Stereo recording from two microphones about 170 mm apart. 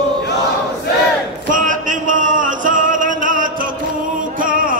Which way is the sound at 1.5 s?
50° right (ahead or behind).